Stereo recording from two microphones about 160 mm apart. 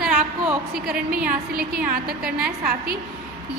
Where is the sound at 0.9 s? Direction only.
65° right (ahead or behind).